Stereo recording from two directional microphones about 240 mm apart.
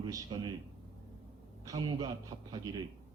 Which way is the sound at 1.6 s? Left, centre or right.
Centre.